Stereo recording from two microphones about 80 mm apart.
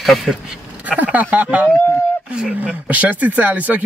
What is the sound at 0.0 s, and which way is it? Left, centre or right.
Speech, centre.